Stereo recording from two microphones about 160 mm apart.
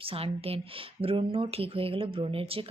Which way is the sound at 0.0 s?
35° right (ahead or behind).